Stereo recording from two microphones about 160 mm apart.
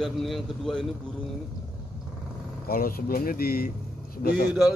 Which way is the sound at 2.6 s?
70° left (ahead or behind).